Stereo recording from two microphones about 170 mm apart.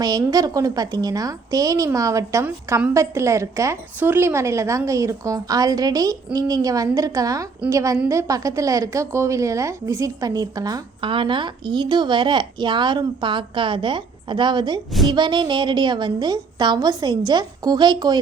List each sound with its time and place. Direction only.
0.0 s a woman's voice: 20° right (ahead or behind)